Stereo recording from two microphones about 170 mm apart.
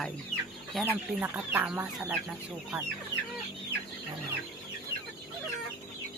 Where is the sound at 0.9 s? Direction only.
10° right (ahead or behind).